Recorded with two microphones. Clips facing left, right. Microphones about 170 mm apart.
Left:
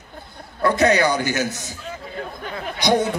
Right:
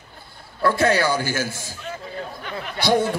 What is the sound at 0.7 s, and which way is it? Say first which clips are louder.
Speech: left 2 dB; 20° left (ahead or behind).